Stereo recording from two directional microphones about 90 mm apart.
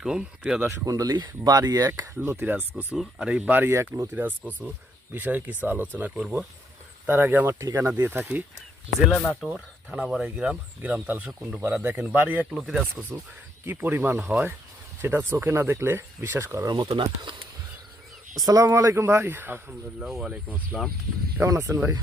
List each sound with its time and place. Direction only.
0.0 s speech: 10° right (ahead or behind)
0.9 s speech: 45° right (ahead or behind)
2.1 s speech: 20° right (ahead or behind)
2.9 s speech: 10° right (ahead or behind)
9.0 s speech: 5° left (ahead or behind); by 11.3 s 15° right (ahead or behind)
11.3 s speech: 5° right (ahead or behind)
11.6 s speech: 20° right (ahead or behind)
12.5 s speech: centre (ahead or behind)
13.7 s speech: 20° right (ahead or behind)
16.6 s speech: 45° right (ahead or behind)
16.9 s speech: 65° right (ahead or behind)
18.4 s speech: 40° right (ahead or behind); by 19.6 s 25° right (ahead or behind)
20.0 s speech: 5° right (ahead or behind)
21.4 s speech: 40° right (ahead or behind)